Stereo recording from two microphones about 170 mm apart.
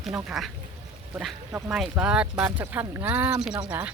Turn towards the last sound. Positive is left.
turn(degrees=-10)  # may be behind; listen again after turning